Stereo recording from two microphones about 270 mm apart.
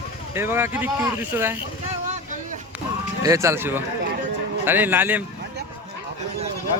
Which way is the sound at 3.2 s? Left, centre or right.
Centre.